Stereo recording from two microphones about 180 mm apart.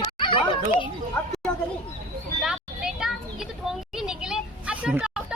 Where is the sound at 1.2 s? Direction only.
5° left (ahead or behind).